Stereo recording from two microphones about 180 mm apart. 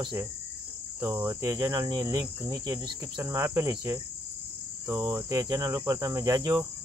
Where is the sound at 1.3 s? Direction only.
20° right (ahead or behind).